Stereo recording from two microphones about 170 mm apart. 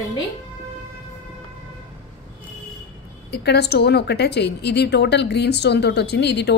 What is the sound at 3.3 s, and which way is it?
A woman's voice, 75° left (ahead or behind).